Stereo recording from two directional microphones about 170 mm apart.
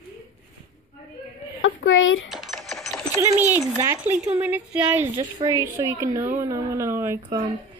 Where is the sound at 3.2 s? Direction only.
15° right (ahead or behind).